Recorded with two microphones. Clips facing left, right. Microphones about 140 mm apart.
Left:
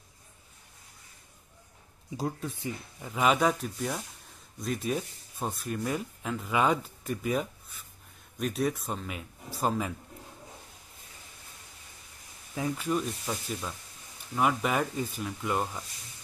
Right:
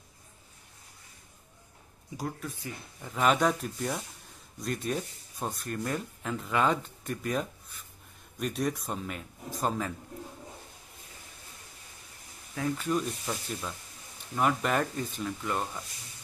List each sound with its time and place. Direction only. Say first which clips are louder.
2.1 s speech: left 3 dB; 25° left (ahead or behind)
3.0 s speech: even; 5° left (ahead or behind)
12.5 s speech: even; 10° left (ahead or behind)